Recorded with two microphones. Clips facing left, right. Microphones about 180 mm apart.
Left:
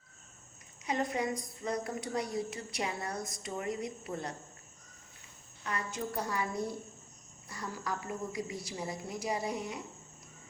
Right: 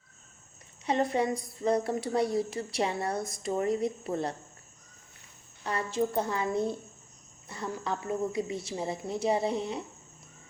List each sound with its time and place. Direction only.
0.9 s a woman's voice: 30° right (ahead or behind)
5.6 s a woman's voice: 30° right (ahead or behind)